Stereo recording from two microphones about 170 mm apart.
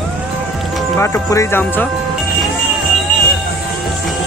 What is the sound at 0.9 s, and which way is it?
Speech, 15° left (ahead or behind).